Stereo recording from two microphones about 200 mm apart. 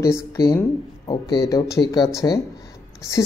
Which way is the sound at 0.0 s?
15° left (ahead or behind).